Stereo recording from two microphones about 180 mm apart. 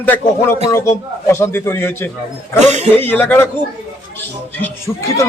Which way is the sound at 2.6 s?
40° right (ahead or behind).